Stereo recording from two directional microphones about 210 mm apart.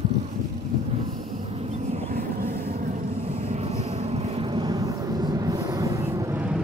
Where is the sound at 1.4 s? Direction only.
30° right (ahead or behind).